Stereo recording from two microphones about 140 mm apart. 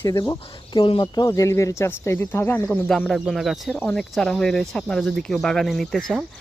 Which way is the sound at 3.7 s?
15° left (ahead or behind).